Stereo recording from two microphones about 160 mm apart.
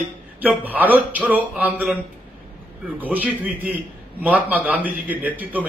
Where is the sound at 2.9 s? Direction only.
10° right (ahead or behind).